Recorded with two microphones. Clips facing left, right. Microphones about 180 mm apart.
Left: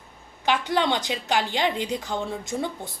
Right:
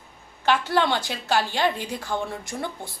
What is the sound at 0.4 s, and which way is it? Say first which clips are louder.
A woman's voice: right 1 dB; 15° left (ahead or behind).